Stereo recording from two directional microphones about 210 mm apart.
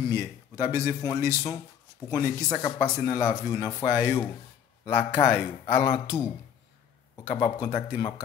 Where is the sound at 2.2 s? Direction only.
15° right (ahead or behind).